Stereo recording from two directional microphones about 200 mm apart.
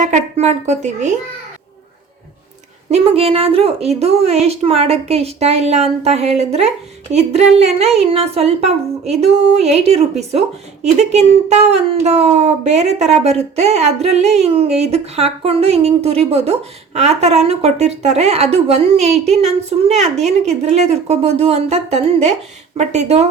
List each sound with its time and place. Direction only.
0.0 s speech: 35° right (ahead or behind)
2.9 s speech: 30° right (ahead or behind)